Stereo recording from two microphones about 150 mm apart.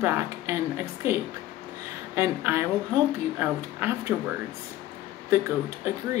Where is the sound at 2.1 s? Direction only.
15° right (ahead or behind).